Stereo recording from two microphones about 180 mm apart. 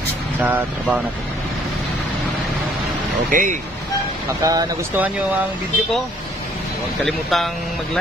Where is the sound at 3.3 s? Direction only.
50° right (ahead or behind).